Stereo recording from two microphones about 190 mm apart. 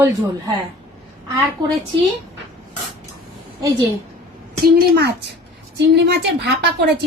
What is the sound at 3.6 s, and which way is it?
Speech, 20° right (ahead or behind).